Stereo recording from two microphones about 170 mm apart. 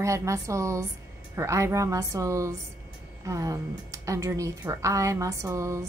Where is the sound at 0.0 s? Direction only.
15° right (ahead or behind).